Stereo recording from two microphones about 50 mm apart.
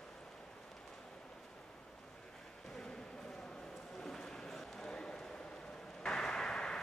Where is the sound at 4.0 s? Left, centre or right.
Centre.